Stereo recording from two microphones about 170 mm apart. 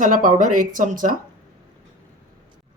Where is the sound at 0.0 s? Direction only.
50° right (ahead or behind).